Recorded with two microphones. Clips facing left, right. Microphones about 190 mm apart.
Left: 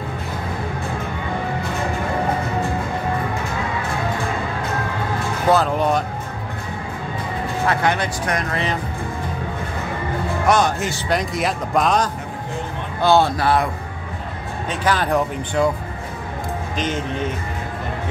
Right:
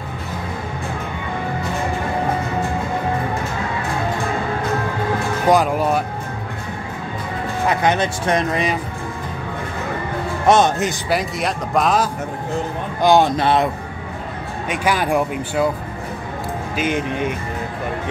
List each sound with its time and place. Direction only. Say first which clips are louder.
5.5 s speech: right 1 dB; 10° right (ahead or behind)
7.6 s speech: right 3 dB; 20° right (ahead or behind)
10.4 s speech: right 4 dB; 25° right (ahead or behind)
11.1 s speech: left 3 dB; centre (ahead or behind)
13.0 s speech: right 2 dB; 15° right (ahead or behind)
14.7 s speech: right 1 dB; 10° right (ahead or behind)
16.7 s speech: right 4 dB; 10° right (ahead or behind)